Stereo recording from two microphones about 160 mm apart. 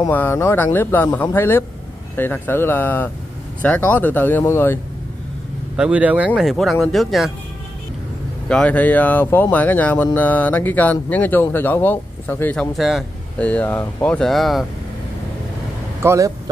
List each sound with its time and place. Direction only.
0.1 s speech: 15° left (ahead or behind)
5.8 s speech: 10° right (ahead or behind)
8.5 s speech: 5° left (ahead or behind)
12.7 s speech: centre (ahead or behind)
13.4 s speech: 10° left (ahead or behind)
16.0 s speech: 15° right (ahead or behind)